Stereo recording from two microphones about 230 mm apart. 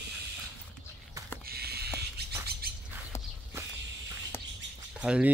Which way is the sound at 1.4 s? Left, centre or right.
Right.